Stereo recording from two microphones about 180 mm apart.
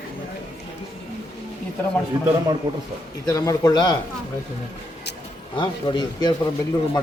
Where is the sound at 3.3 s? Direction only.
20° left (ahead or behind).